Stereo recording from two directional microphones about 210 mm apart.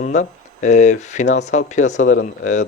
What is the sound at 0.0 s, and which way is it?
Speech, 35° left (ahead or behind).